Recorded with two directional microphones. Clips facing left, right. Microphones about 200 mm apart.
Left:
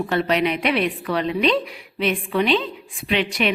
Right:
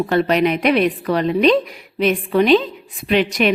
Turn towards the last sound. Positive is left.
turn(degrees=-45)  # may be behind; listen again after turning